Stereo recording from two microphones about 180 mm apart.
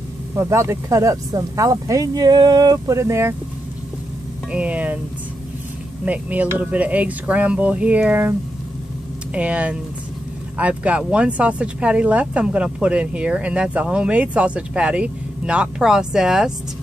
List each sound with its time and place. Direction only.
0.4 s speech: 15° right (ahead or behind)
4.5 s speech: 5° right (ahead or behind)
6.0 s speech: 10° right (ahead or behind)